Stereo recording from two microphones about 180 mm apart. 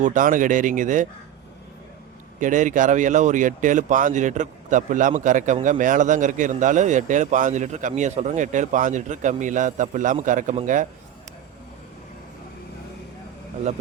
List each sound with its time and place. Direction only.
0.0 s a man's voice: 45° right (ahead or behind)
2.4 s a man's voice: 45° right (ahead or behind)